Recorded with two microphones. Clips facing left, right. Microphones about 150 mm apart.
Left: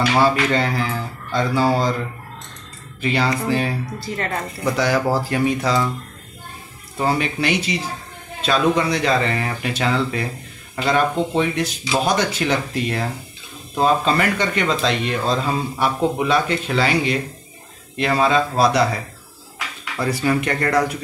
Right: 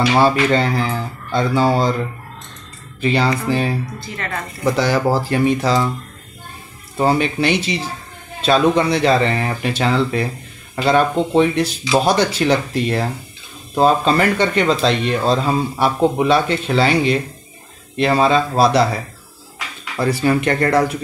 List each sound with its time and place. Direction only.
0.2 s speech: 30° right (ahead or behind)
3.0 s speech: 30° right (ahead or behind)
4.0 s speech: 35° left (ahead or behind)
4.7 s speech: 30° right (ahead or behind)
7.0 s speech: 30° right (ahead or behind)
20.0 s speech: 30° right (ahead or behind)